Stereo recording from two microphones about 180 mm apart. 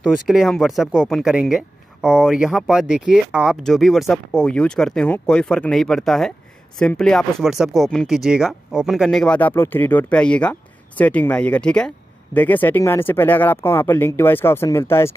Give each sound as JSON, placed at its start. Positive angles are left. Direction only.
{"t": 0.0, "sound": "speech", "side_deg": 0}